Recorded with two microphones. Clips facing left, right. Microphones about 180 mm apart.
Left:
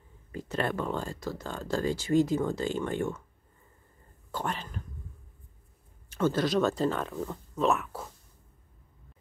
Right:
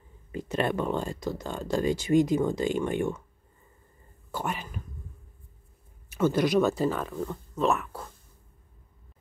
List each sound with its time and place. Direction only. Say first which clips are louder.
0.3 s speech: right 3 dB; 20° right (ahead or behind)
4.3 s speech: right 1 dB; 10° right (ahead or behind)
6.0 s speech: right 3 dB; 10° right (ahead or behind)